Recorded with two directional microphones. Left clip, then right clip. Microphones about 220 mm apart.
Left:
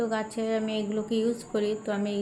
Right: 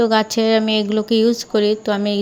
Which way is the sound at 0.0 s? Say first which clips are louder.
Right 13 dB; 40° right (ahead or behind).